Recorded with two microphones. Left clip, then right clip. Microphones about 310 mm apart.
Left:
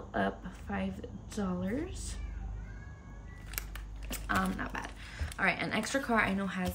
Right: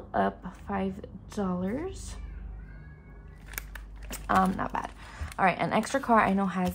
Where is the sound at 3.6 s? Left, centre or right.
Centre.